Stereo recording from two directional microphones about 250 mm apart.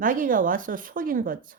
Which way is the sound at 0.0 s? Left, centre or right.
Right.